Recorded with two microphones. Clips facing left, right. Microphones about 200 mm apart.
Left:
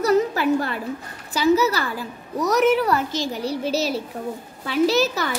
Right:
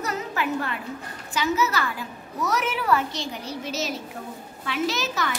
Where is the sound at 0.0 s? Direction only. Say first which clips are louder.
Left 10 dB; 35° left (ahead or behind).